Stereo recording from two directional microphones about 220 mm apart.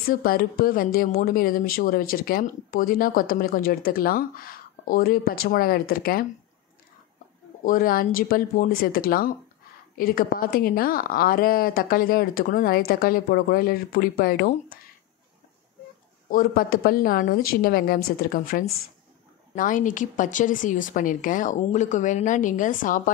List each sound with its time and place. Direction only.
0.0 s speech: 40° left (ahead or behind)
7.6 s speech: 40° left (ahead or behind)
16.3 s speech: 40° left (ahead or behind)